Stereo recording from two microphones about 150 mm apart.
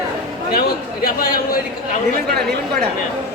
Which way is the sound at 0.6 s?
80° left.